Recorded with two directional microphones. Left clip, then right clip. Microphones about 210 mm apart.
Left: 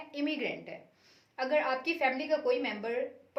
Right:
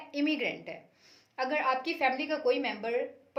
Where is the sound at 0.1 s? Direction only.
50° right (ahead or behind).